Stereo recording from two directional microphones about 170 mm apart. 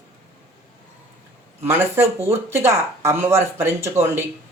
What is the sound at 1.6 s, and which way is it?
A man's voice, 15° right (ahead or behind).